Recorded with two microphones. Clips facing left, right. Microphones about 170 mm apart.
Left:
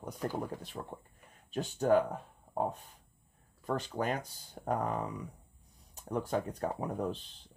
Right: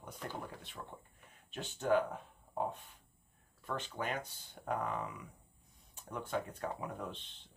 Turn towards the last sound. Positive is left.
turn(degrees=40)  # may be behind; listen again after turning